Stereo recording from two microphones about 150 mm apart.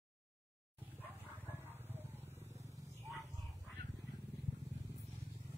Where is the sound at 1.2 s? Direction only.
15° right (ahead or behind).